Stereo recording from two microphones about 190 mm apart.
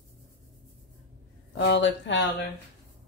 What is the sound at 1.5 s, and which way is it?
Speech, 70° left (ahead or behind).